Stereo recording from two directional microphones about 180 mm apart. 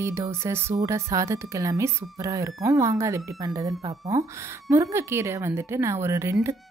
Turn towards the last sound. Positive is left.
turn(degrees=-15)  # may be behind; listen again after turning